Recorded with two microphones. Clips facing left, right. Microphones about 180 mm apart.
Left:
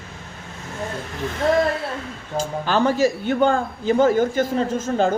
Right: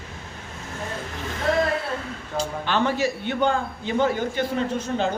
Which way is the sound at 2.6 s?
40° left (ahead or behind).